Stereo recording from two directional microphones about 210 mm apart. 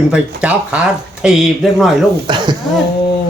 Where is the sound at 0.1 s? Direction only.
5° right (ahead or behind).